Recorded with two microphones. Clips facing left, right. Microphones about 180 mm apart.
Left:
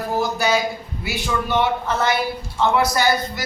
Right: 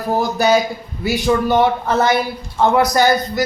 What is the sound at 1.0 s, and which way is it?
Speech, 40° right (ahead or behind).